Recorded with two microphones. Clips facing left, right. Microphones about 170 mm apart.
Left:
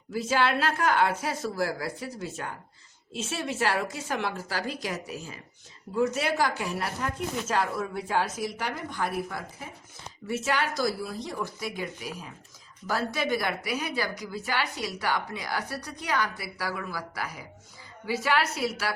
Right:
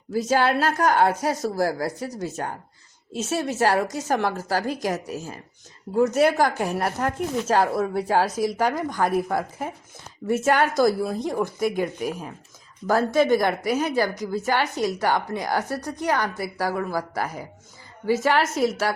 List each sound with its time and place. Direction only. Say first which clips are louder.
0.1 s a woman's voice: right 5 dB; 40° right (ahead or behind)